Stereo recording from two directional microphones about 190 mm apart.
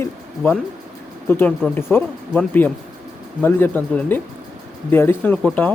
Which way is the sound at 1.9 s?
10° left (ahead or behind).